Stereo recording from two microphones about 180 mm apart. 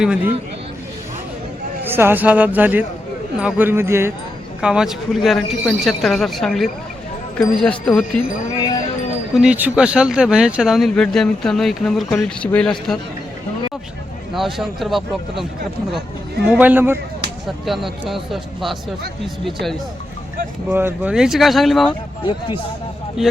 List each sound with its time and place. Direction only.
0.0 s a man's voice: 5° right (ahead or behind)
1.8 s a man's voice: 10° right (ahead or behind)
8.1 s speech: 5° left (ahead or behind)
9.3 s speech: 5° right (ahead or behind)
14.3 s speech: centre (ahead or behind)
16.5 s a man's voice: 10° right (ahead or behind)
17.7 s speech: centre (ahead or behind)
20.7 s speech: 10° right (ahead or behind)
22.3 s speech: 25° left (ahead or behind)
23.2 s speech: centre (ahead or behind)